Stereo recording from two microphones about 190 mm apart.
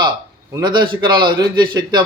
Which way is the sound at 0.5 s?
25° right (ahead or behind).